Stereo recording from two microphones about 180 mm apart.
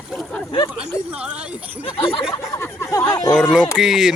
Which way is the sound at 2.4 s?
15° left (ahead or behind).